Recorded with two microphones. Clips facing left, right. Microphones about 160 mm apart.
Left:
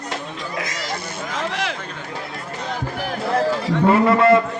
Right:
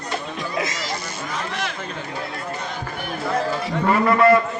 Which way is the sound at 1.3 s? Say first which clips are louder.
Left 3 dB; 90° left.